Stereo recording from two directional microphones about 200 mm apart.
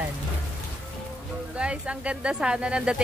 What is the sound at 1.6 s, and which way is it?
Speech, 5° right (ahead or behind).